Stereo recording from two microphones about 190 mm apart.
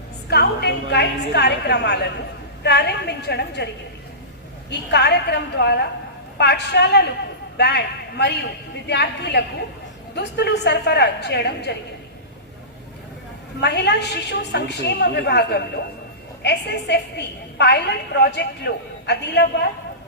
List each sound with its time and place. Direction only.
0.3 s a woman's voice: 60° left (ahead or behind)
4.7 s a woman's voice: 60° left (ahead or behind)
13.6 s a woman's voice: 60° left (ahead or behind)